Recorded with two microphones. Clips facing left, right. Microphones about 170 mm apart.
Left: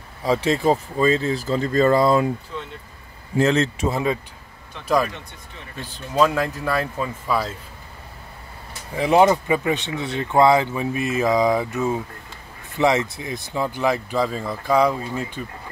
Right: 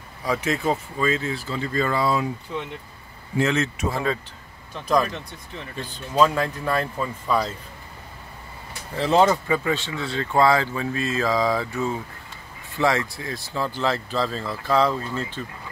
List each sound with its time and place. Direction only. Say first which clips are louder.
0.2 s speech: left 5 dB; 30° left (ahead or behind); by 2.2 s 45° left (ahead or behind)
3.3 s speech: left 4 dB; 35° left (ahead or behind)
5.8 s speech: left 1 dB; centre (ahead or behind)
8.9 s speech: left 3 dB; 15° left (ahead or behind)